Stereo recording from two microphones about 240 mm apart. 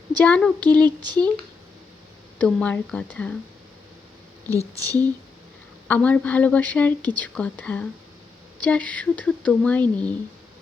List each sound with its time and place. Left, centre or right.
0.3 s speech: centre
1.0 s speech: centre
2.4 s speech: centre
4.4 s speech: centre
5.9 s a woman's voice: centre